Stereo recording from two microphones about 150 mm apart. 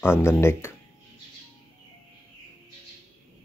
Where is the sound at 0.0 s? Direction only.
15° left (ahead or behind).